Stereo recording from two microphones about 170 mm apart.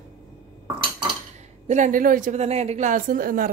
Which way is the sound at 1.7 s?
50° right (ahead or behind).